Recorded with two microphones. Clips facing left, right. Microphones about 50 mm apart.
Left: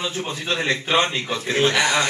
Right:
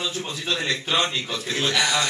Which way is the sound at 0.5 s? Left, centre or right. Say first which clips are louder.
Left 3 dB; left.